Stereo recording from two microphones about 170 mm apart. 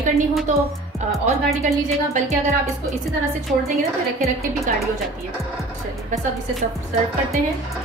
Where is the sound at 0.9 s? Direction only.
Centre (ahead or behind).